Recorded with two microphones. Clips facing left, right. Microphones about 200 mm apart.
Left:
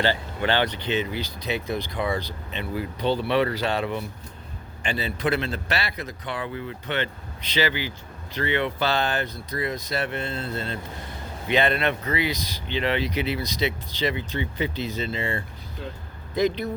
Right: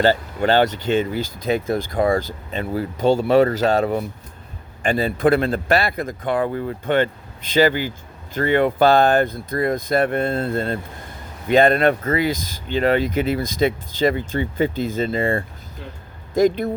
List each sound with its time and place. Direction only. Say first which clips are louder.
0.0 s a man's voice: right 7 dB; 45° right (ahead or behind)